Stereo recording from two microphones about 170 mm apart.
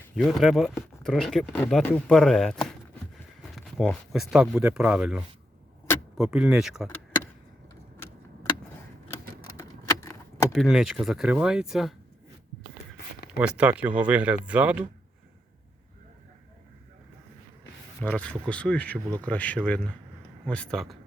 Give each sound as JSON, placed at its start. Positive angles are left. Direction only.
{"t": 0.2, "sound": "speech", "side_deg": 0}
{"t": 9.6, "sound": "keys jangling", "side_deg": 20}
{"t": 10.5, "sound": "speech", "side_deg": 0}
{"t": 13.4, "sound": "speech", "side_deg": -5}
{"t": 18.0, "sound": "speech", "side_deg": 10}